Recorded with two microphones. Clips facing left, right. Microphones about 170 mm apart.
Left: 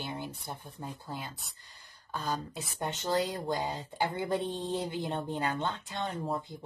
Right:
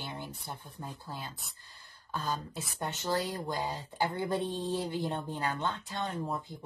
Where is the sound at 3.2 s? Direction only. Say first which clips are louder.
Left 2 dB; 20° left (ahead or behind).